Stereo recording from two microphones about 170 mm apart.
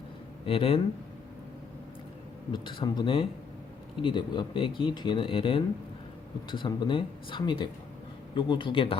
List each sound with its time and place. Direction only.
0.4 s speech: 35° left (ahead or behind)
2.5 s speech: 25° left (ahead or behind)